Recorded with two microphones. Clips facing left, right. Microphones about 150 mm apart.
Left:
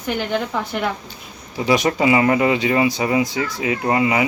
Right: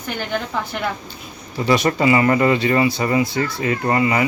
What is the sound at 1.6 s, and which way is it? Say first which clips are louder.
Speech: even; 10° left (ahead or behind).